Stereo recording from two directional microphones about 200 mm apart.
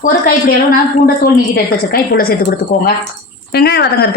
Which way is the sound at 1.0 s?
50° left (ahead or behind).